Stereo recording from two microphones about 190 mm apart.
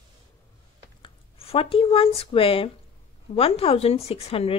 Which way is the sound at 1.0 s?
30° left (ahead or behind).